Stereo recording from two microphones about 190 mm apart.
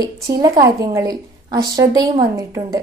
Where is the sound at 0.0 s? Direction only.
20° right (ahead or behind).